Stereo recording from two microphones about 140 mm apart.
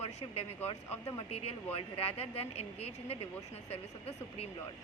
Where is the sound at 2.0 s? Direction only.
45° left (ahead or behind).